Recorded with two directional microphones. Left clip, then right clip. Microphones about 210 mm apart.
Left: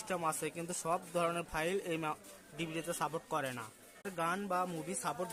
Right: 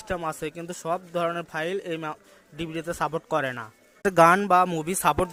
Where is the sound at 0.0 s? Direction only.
20° right (ahead or behind).